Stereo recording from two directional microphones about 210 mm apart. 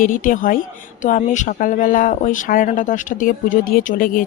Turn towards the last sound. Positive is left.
turn(degrees=40)  # may be behind; listen again after turning